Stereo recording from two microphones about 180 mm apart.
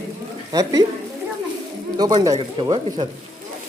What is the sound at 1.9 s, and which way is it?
Speech, 20° right (ahead or behind).